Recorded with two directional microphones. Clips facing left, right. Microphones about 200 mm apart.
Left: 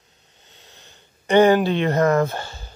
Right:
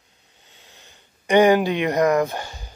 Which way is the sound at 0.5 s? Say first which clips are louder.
Left 1 dB; 10° right (ahead or behind).